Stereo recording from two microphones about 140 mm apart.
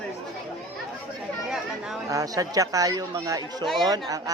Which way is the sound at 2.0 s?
25° right (ahead or behind).